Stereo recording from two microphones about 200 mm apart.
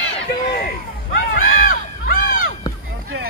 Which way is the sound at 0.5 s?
50° left (ahead or behind).